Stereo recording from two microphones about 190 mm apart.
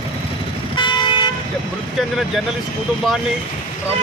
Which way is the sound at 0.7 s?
25° left (ahead or behind).